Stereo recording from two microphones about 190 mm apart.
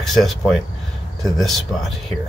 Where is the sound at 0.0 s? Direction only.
Centre (ahead or behind).